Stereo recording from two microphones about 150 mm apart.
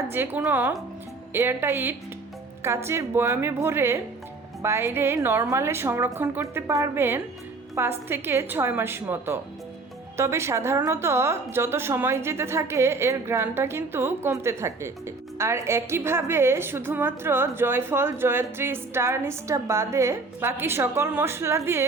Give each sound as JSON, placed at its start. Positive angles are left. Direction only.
{"t": 0.1, "sound": "a woman's voice", "side_deg": -15}